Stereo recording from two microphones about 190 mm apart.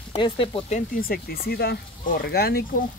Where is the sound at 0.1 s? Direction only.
25° left (ahead or behind).